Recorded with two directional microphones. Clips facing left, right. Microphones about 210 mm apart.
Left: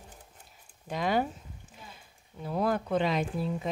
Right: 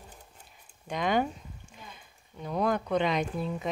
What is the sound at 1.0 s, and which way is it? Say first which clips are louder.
Speech: right 1 dB; 35° left (ahead or behind).